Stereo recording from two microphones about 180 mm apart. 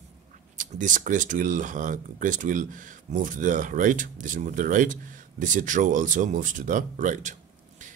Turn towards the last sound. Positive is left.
turn(degrees=-45)  # may be behind; listen again after turning